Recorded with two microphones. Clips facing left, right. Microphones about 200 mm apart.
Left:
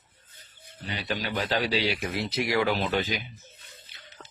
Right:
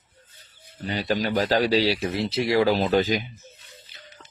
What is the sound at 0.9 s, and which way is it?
Speech, 45° right (ahead or behind).